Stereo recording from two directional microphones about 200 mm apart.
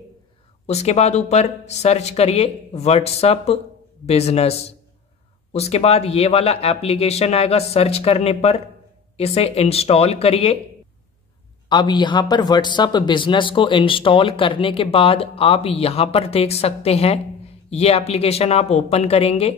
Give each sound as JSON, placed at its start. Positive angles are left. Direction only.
{"t": 0.7, "sound": "speech", "side_deg": 35}
{"t": 11.7, "sound": "speech", "side_deg": 20}